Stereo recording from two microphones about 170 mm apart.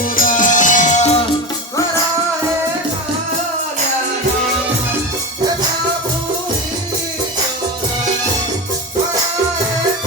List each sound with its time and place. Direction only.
0.0 s music: 55° left (ahead or behind)